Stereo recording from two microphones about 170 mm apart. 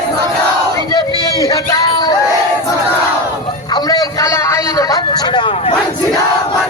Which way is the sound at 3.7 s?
25° left (ahead or behind).